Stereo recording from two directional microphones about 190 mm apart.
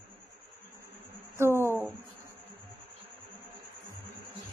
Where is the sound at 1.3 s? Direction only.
15° right (ahead or behind).